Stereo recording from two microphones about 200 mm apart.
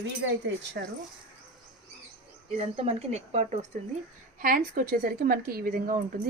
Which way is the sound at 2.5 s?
30° right (ahead or behind).